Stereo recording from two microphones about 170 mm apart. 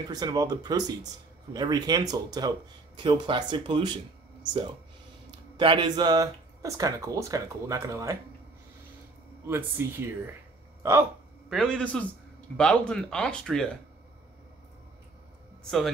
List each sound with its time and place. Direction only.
0.1 s speech: 25° right (ahead or behind)
5.6 s speech: 25° right (ahead or behind)
9.5 s speech: 15° right (ahead or behind)
11.4 s speech: centre (ahead or behind)